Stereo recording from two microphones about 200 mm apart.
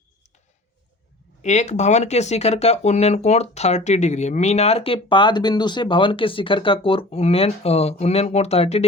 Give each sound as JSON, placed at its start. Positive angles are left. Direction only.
{"t": 1.4, "sound": "speech", "side_deg": 35}